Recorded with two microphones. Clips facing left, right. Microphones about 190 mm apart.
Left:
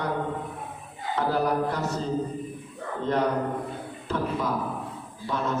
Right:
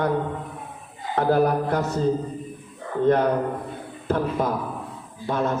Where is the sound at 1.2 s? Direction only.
55° right (ahead or behind).